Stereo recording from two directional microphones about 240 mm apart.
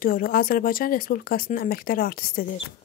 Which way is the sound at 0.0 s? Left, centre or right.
Left.